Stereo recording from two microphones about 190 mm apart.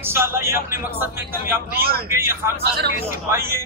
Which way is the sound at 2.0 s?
10° right (ahead or behind).